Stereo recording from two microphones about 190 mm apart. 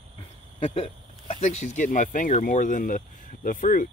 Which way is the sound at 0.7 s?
30° left (ahead or behind).